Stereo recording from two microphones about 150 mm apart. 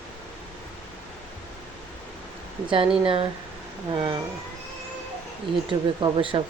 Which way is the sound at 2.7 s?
35° right (ahead or behind).